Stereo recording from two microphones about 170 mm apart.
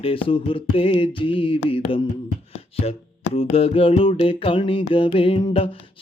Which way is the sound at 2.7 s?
35° left (ahead or behind).